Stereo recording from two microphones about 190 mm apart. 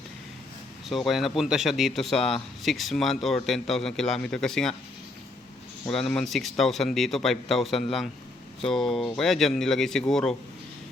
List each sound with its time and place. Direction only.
0.9 s speech: centre (ahead or behind)
5.9 s speech: 5° left (ahead or behind)